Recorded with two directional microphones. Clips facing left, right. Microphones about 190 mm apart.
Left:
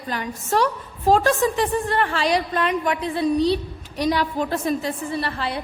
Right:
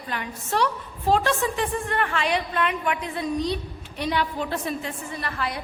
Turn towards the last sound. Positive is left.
turn(degrees=30)  # may be behind; listen again after turning